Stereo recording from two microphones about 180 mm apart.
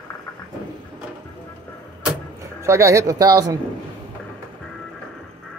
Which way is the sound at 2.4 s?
15° right (ahead or behind).